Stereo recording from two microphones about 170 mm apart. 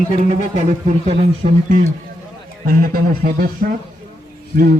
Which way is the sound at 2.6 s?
60° right (ahead or behind).